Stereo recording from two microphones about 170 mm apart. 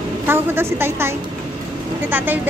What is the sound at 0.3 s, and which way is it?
A woman's voice, 15° right (ahead or behind).